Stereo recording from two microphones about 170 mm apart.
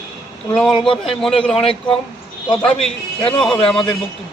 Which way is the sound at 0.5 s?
5° left (ahead or behind).